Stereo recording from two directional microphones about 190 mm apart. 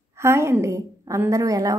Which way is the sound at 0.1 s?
15° right (ahead or behind).